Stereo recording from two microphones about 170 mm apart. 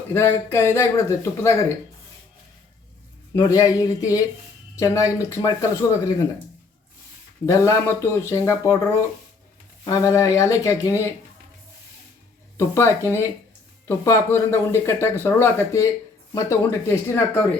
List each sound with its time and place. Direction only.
0.1 s speech: 15° left (ahead or behind)
3.3 s speech: 20° left (ahead or behind)
7.4 s speech: 15° left (ahead or behind)
12.5 s speech: 15° left (ahead or behind)